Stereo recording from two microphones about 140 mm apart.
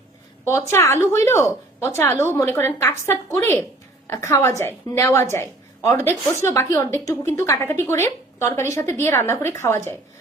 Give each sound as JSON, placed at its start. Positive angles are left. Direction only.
{"t": 0.7, "sound": "a woman's voice", "side_deg": 20}